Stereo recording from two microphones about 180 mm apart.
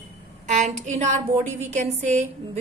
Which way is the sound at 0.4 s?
40° right (ahead or behind).